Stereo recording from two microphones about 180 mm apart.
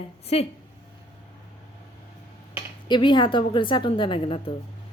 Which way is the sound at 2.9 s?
25° left (ahead or behind).